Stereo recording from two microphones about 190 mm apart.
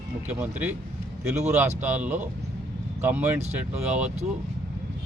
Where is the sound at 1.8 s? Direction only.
10° right (ahead or behind).